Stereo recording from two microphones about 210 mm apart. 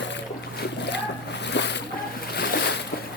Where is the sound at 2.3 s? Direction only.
50° left (ahead or behind).